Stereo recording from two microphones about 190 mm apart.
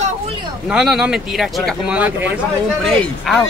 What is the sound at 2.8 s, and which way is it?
Speech, 5° left (ahead or behind).